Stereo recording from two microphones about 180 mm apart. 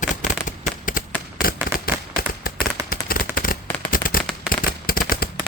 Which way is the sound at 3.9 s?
50° left (ahead or behind).